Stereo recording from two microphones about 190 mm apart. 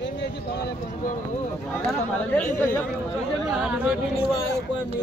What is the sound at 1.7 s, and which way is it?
Speech, 5° left (ahead or behind).